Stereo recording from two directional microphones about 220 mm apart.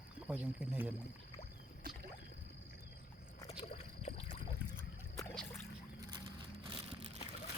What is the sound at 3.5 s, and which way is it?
Rowboat, 30° left (ahead or behind).